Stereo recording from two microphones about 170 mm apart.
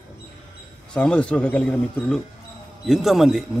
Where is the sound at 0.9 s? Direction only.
5° left (ahead or behind).